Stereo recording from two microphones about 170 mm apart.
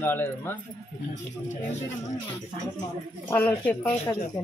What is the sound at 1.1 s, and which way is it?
Speech, 45° left (ahead or behind).